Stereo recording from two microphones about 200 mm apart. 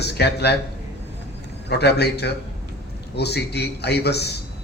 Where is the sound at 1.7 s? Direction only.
55° left (ahead or behind).